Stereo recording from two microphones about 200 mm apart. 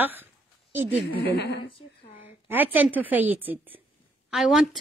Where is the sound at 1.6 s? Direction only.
25° left (ahead or behind).